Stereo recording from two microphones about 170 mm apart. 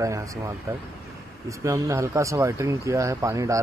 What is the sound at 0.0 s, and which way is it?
Speech, 20° right (ahead or behind).